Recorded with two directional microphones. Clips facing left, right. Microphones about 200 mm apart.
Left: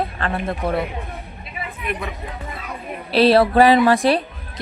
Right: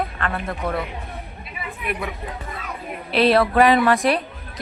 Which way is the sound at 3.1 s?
30° left (ahead or behind).